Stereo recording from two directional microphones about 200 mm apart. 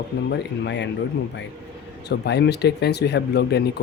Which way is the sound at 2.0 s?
55° left (ahead or behind).